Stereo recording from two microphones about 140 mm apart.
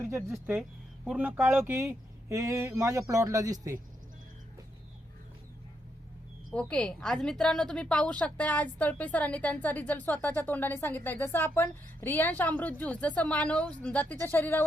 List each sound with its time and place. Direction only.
0.0 s speech: 20° right (ahead or behind)
6.5 s a woman's voice: 10° left (ahead or behind)